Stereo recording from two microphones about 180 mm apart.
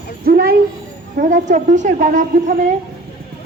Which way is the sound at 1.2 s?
45° right (ahead or behind).